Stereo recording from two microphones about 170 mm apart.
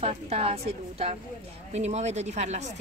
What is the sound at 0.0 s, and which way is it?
A woman's voice, 35° right (ahead or behind).